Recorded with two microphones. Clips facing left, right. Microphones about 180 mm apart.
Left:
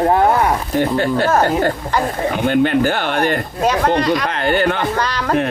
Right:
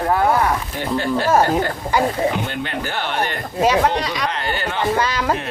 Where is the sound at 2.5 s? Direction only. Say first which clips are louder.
Left 11 dB; 55° left (ahead or behind).